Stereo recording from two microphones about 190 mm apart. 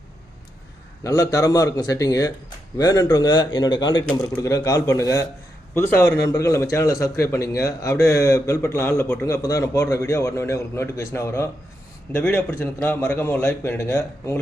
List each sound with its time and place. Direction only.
1.0 s a man's voice: 20° left (ahead or behind)